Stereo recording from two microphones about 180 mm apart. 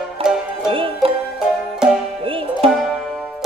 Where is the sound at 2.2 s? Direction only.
30° right (ahead or behind).